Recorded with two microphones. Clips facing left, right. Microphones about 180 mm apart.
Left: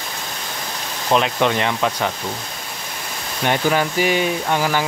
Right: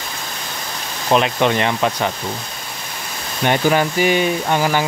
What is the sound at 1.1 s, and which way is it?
Speech, 5° right (ahead or behind).